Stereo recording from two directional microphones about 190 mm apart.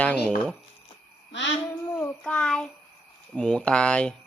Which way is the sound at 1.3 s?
70° left (ahead or behind).